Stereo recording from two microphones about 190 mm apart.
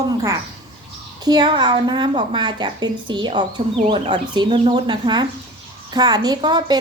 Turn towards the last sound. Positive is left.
turn(degrees=-20)  # may be behind; listen again after turning